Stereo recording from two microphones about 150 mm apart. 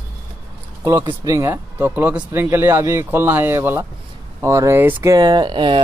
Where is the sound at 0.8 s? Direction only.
20° right (ahead or behind).